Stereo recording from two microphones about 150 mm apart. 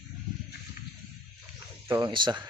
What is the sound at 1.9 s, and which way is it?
Speech, 25° right (ahead or behind).